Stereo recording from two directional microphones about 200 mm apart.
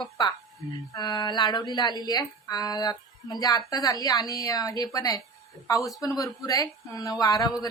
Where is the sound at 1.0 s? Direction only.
20° left (ahead or behind).